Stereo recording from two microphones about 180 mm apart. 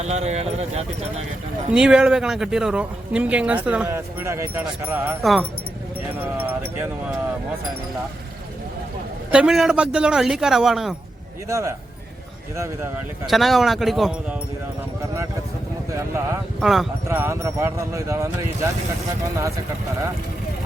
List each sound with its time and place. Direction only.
0.0 s speech: 35° right (ahead or behind)
1.7 s speech: 5° right (ahead or behind)
5.2 s speech: centre (ahead or behind)
6.3 s speech: 10° right (ahead or behind)
9.3 s speech: 5° right (ahead or behind)
11.4 s speech: 15° right (ahead or behind)
13.2 s speech: centre (ahead or behind)
16.0 s speech: 15° right (ahead or behind)
16.6 s speech: centre (ahead or behind)
17.1 s speech: 15° right (ahead or behind)